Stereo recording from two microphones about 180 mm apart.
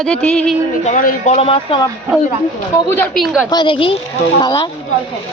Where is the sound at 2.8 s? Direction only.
5° left (ahead or behind).